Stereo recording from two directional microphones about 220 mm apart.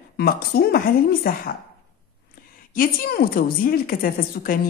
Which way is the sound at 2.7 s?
40° left (ahead or behind).